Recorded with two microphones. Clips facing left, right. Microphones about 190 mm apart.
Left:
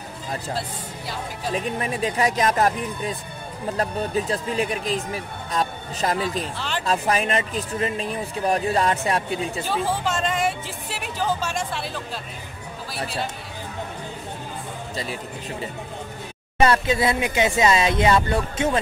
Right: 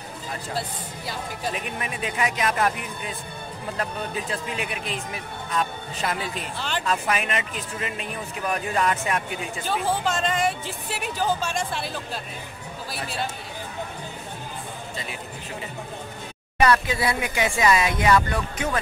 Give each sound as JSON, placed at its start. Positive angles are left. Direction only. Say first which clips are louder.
{"t": 1.5, "sound": "speech", "louder": "left 10 dB", "side_deg": 35}
{"t": 9.7, "sound": "speech", "louder": "right 1 dB", "side_deg": 5}
{"t": 16.5, "sound": "speech", "louder": "left 2 dB", "side_deg": 25}